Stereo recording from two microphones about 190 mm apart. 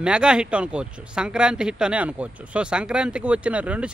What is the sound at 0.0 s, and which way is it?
Speech, 5° right (ahead or behind).